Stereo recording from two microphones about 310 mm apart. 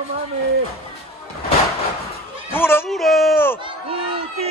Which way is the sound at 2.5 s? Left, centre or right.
Centre.